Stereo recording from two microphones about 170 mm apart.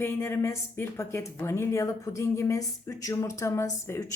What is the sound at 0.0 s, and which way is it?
Speech, 15° left (ahead or behind).